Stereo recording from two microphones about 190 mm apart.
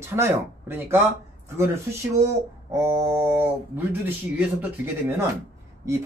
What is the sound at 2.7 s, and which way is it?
Speech, 15° right (ahead or behind).